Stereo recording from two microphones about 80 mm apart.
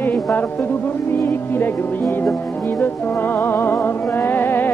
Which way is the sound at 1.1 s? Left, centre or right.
Left.